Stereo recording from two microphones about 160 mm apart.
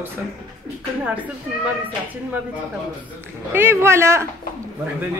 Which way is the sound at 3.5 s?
15° right (ahead or behind).